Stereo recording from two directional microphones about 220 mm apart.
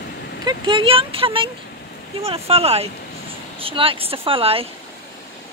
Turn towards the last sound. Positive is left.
turn(degrees=-25)  # may be behind; listen again after turning